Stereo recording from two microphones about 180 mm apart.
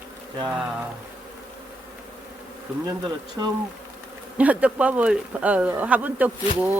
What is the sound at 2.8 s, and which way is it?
Speech, 20° right (ahead or behind).